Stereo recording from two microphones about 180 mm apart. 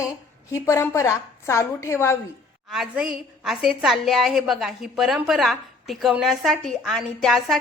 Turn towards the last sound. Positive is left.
turn(degrees=0)  # may be behind; listen again after turning